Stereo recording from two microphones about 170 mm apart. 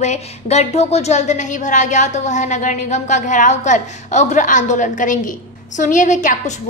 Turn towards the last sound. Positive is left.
turn(degrees=45)  # may be behind; listen again after turning